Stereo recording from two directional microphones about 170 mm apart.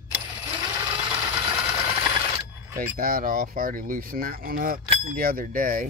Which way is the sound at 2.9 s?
60° right (ahead or behind).